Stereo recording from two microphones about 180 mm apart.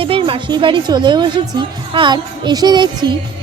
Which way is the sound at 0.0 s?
30° right (ahead or behind).